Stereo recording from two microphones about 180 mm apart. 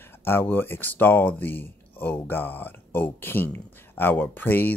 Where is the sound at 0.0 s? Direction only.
15° left (ahead or behind).